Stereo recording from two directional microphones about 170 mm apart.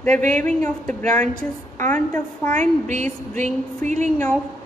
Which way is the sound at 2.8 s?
45° right (ahead or behind).